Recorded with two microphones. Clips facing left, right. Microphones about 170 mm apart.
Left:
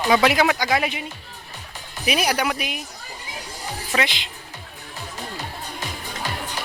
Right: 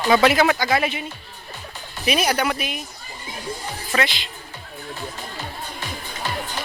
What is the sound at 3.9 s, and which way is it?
Speech, 20° left (ahead or behind).